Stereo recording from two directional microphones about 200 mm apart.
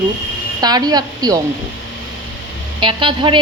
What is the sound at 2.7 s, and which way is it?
Speech, 25° right (ahead or behind).